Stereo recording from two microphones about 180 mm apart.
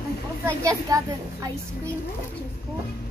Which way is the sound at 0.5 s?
20° right (ahead or behind).